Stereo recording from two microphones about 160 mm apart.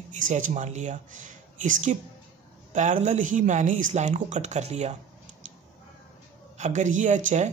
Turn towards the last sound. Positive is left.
turn(degrees=-50)  # may be behind; listen again after turning